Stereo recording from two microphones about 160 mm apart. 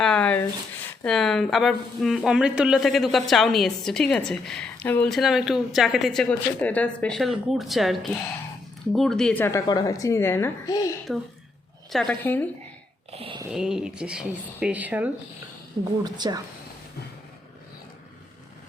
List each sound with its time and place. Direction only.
0.0 s a sound: 5° left (ahead or behind)
1.0 s a woman's voice: centre (ahead or behind); by 10.9 s 20° left (ahead or behind)
11.9 s a woman's voice: centre (ahead or behind)
13.1 s a sound: 35° right (ahead or behind)
13.5 s speech: 5° right (ahead or behind)
15.8 s a woman's voice: 25° right (ahead or behind)